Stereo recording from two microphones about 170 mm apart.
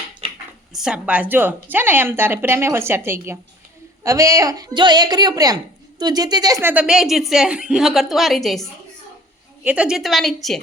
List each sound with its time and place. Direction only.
0.7 s a woman's voice: 5° right (ahead or behind)
9.6 s a woman's voice: 5° right (ahead or behind)